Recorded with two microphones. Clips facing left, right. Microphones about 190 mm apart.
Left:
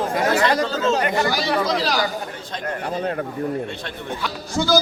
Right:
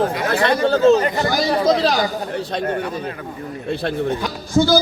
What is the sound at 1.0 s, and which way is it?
Speech, 40° right (ahead or behind).